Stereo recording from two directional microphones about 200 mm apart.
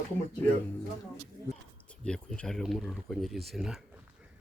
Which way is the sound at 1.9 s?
5° left (ahead or behind).